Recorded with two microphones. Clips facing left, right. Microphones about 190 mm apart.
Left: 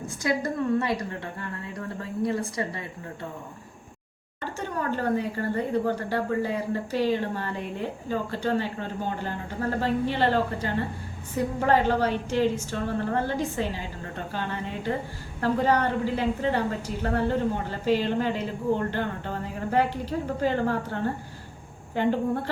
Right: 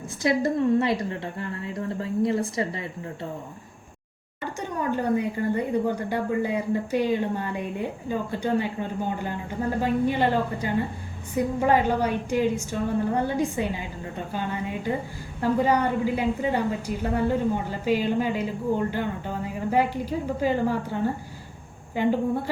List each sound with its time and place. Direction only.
0.2 s a woman's voice: 20° right (ahead or behind)
4.8 s a woman's voice: 15° right (ahead or behind)